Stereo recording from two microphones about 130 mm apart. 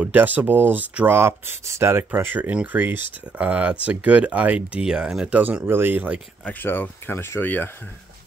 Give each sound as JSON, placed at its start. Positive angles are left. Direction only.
{"t": 0.0, "sound": "speech", "side_deg": -15}
{"t": 6.4, "sound": "speech", "side_deg": 15}